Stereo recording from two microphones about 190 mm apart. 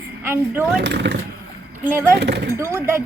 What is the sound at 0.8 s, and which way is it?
Speech, 65° right (ahead or behind).